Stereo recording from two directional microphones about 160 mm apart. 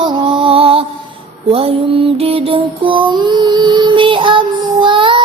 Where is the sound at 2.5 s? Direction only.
30° right (ahead or behind).